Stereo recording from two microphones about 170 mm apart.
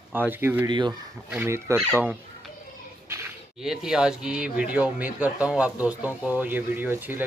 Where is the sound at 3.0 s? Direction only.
15° right (ahead or behind).